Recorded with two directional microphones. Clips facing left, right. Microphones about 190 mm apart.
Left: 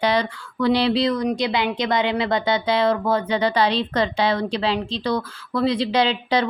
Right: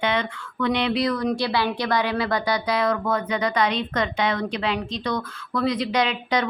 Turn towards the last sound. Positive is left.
turn(degrees=30)  # may be behind; listen again after turning